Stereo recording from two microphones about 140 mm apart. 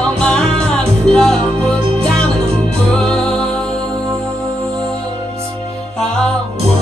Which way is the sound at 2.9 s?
5° left (ahead or behind).